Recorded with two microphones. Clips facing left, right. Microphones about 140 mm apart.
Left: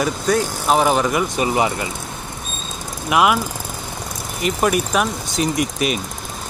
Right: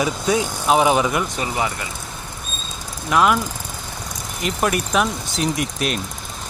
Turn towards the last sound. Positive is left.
turn(degrees=0)  # may be behind; listen again after turning